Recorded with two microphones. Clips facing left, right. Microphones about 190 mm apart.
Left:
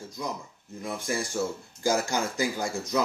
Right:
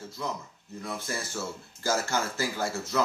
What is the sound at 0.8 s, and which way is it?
Speech, 15° left (ahead or behind).